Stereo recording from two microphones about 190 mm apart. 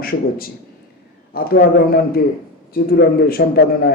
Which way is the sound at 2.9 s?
55° left (ahead or behind).